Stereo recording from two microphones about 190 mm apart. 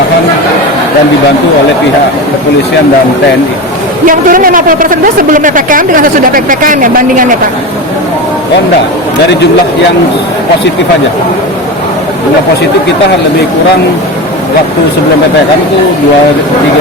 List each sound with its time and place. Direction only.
4.0 s a man's voice: 45° right (ahead or behind)